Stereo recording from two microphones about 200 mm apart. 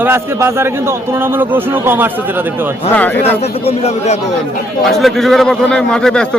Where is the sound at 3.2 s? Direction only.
30° left (ahead or behind).